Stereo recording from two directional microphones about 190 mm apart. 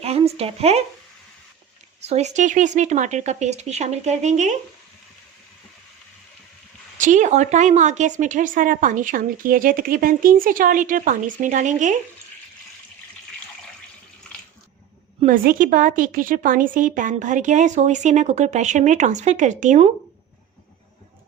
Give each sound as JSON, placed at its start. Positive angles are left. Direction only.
{"t": 0.0, "sound": "speech", "side_deg": -30}
{"t": 2.0, "sound": "a woman's voice", "side_deg": -35}
{"t": 7.0, "sound": "a woman's voice", "side_deg": -40}
{"t": 15.2, "sound": "a woman's voice", "side_deg": -45}